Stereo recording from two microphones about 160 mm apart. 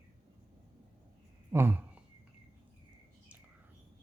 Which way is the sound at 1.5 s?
15° right (ahead or behind).